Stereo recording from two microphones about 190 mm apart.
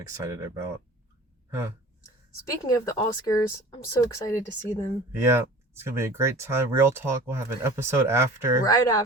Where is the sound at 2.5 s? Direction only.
20° left (ahead or behind).